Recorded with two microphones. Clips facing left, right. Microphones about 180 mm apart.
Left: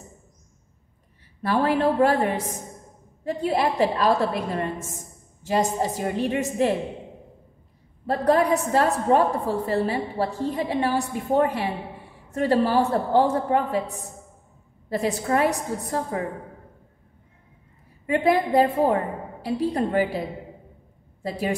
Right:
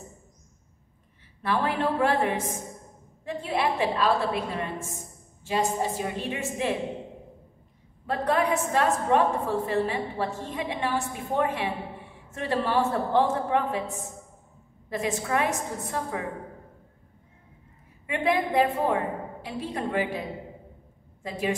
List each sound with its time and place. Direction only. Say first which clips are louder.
1.4 s a woman's voice: left 5 dB; 40° left (ahead or behind)
8.1 s a woman's voice: left 5 dB; 35° left (ahead or behind)
18.0 s a woman's voice: left 5 dB; 35° left (ahead or behind)